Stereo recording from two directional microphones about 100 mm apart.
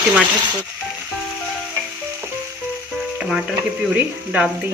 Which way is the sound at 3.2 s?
10° right (ahead or behind).